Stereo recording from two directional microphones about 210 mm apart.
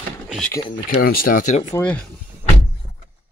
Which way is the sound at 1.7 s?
5° left (ahead or behind).